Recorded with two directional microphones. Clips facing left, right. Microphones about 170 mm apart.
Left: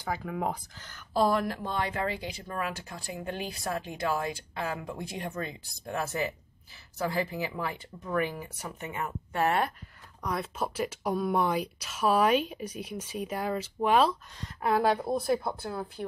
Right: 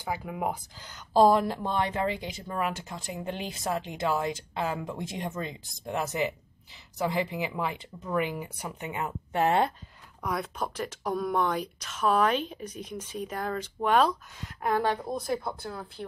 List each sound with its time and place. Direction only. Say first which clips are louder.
0.0 s speech: even; 15° right (ahead or behind)
10.2 s speech: even; centre (ahead or behind)